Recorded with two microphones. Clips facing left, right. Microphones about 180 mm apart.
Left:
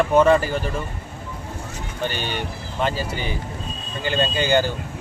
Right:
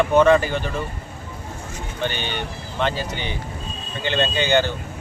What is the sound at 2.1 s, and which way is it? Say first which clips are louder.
Speech: left 1 dB; 40° left (ahead or behind).